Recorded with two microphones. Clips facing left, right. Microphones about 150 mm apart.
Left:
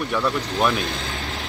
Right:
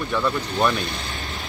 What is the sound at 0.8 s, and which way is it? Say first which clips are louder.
Vehicle: left 2 dB; 90° left.